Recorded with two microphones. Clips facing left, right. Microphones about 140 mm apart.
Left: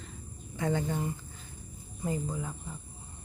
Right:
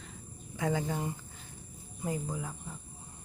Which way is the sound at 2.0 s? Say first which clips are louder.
Left 2 dB; 5° right (ahead or behind).